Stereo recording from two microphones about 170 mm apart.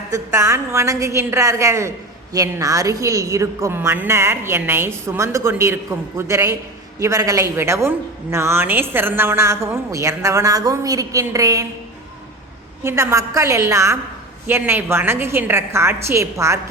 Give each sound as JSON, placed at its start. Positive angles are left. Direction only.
{"t": 0.1, "sound": "a woman's voice", "side_deg": -15}
{"t": 12.8, "sound": "a woman's voice", "side_deg": -15}